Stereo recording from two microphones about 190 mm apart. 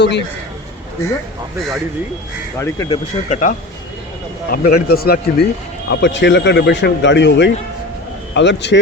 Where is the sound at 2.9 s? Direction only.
40° left (ahead or behind).